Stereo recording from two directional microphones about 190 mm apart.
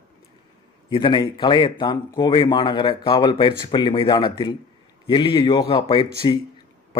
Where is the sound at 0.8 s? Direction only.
25° left (ahead or behind).